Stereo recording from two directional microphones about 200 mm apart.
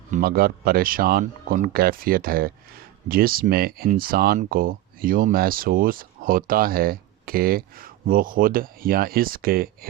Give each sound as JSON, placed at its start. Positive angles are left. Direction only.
{"t": 0.1, "sound": "speech", "side_deg": -50}